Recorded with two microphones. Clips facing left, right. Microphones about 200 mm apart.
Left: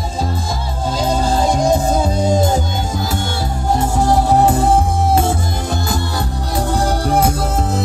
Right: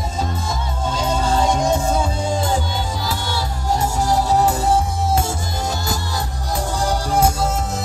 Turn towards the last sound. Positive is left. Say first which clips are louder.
# left 3 dB
turn(degrees=60)  # may be behind; listen again after turning